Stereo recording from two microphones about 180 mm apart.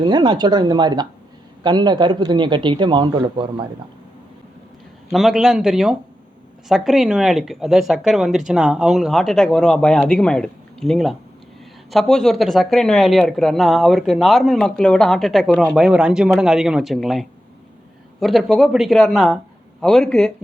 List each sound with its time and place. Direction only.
0.0 s speech: 25° right (ahead or behind)
5.1 s speech: 5° right (ahead or behind)